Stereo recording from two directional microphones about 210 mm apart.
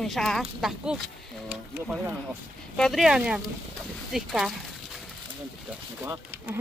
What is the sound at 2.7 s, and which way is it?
Speech, centre (ahead or behind).